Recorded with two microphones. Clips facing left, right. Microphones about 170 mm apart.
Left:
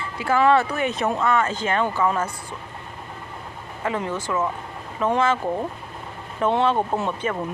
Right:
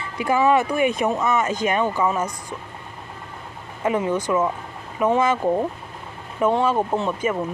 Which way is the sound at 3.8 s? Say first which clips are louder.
Right 5 dB; 15° right (ahead or behind).